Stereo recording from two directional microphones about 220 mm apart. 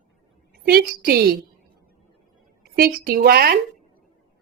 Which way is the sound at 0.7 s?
40° right (ahead or behind).